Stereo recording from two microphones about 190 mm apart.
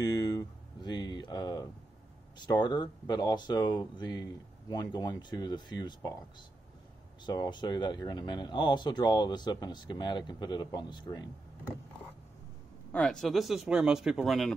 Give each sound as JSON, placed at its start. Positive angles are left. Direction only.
{"t": 0.0, "sound": "a sound", "side_deg": 20}
{"t": 2.3, "sound": "speech", "side_deg": 20}
{"t": 7.2, "sound": "speech", "side_deg": 25}
{"t": 12.9, "sound": "speech", "side_deg": 5}